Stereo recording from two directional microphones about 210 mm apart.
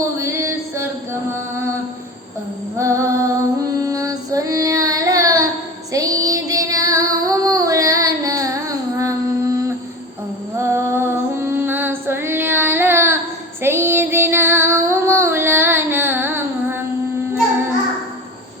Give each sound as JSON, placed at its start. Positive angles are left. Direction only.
{"t": 0.2, "sound": "music", "side_deg": -15}
{"t": 2.7, "sound": "music", "side_deg": -15}
{"t": 3.8, "sound": "child singing", "side_deg": -15}
{"t": 10.6, "sound": "female singing", "side_deg": -15}
{"t": 13.6, "sound": "child singing", "side_deg": -10}